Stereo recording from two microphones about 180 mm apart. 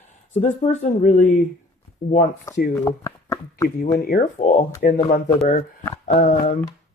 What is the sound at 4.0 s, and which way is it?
Speech, 55° left (ahead or behind).